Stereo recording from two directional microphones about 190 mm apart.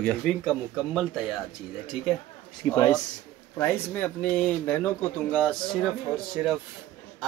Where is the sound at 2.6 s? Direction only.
15° left (ahead or behind).